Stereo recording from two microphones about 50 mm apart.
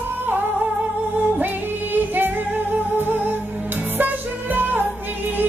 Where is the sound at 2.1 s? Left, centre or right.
Right.